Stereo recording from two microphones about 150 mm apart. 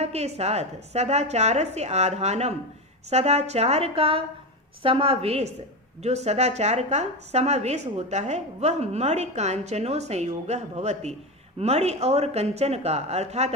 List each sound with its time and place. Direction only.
0.0 s a woman's voice: 45° right (ahead or behind)